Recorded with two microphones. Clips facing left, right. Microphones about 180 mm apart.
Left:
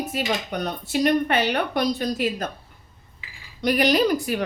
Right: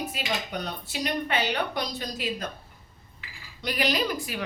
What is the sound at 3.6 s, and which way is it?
Speech, 50° left (ahead or behind).